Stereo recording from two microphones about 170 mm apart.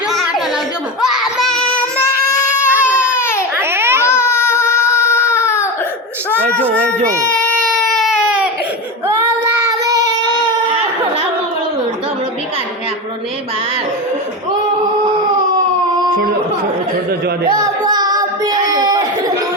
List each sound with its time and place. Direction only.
0.1 s a sound: centre (ahead or behind)
1.0 s child singing: 5° right (ahead or behind)
2.4 s baby cry: 15° left (ahead or behind)
3.6 s babbling: 15° right (ahead or behind)
4.0 s baby cry: 15° left (ahead or behind)
7.8 s baby cry: centre (ahead or behind)
9.0 s child singing: 15° right (ahead or behind)
17.1 s speech: 70° right (ahead or behind)
17.5 s music: 25° right (ahead or behind)